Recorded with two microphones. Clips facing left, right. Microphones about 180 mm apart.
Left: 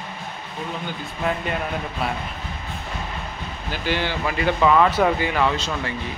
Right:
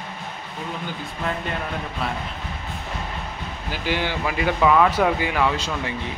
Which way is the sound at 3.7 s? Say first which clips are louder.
Even; 10° right (ahead or behind).